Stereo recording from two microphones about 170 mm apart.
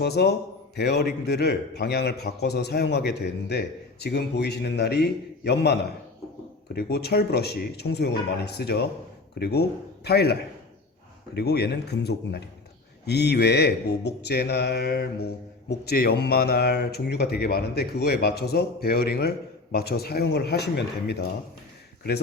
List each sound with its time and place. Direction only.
0.0 s a man's voice: 75° left (ahead or behind)
6.7 s a man's voice: 70° left (ahead or behind)
11.3 s a man's voice: 70° left (ahead or behind)